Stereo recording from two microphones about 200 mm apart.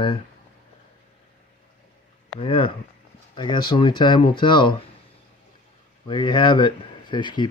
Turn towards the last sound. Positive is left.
turn(degrees=20)  # may be behind; listen again after turning